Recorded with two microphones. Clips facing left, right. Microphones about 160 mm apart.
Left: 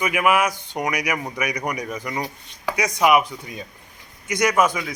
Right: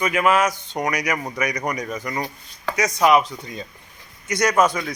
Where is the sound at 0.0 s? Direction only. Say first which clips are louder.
Right 1 dB; 15° left (ahead or behind).